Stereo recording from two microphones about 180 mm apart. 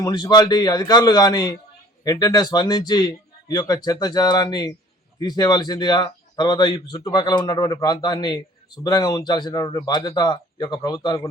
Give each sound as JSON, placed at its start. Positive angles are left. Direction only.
{"t": 0.0, "sound": "speech", "side_deg": 20}